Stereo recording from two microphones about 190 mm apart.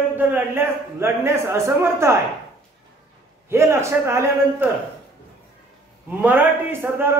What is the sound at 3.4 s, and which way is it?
A man's voice, 15° right (ahead or behind).